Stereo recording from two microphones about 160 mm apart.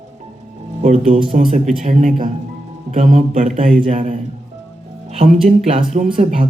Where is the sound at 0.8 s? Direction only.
50° right (ahead or behind).